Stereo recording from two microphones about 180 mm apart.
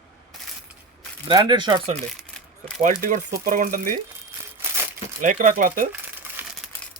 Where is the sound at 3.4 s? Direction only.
50° right (ahead or behind).